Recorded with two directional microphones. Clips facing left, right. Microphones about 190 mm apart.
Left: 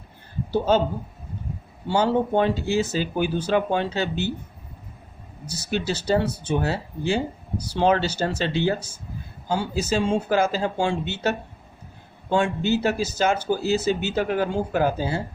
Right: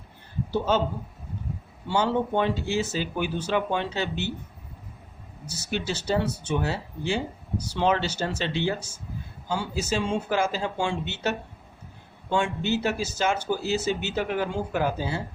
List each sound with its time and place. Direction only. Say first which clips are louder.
0.5 s speech: left 4 dB; 35° left (ahead or behind)
1.9 s speech: left 4 dB; 35° left (ahead or behind)
5.5 s speech: left 4 dB; 35° left (ahead or behind)